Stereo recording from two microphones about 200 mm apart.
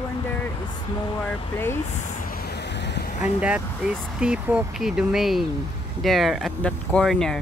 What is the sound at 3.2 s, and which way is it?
Speech, 5° right (ahead or behind).